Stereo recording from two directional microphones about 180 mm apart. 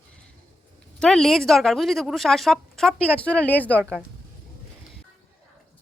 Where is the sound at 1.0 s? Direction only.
Centre (ahead or behind).